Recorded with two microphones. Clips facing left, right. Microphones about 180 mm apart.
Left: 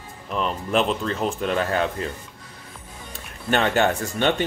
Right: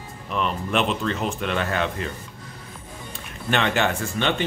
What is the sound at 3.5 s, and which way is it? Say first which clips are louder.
Speech: left 2 dB; 40° left (ahead or behind).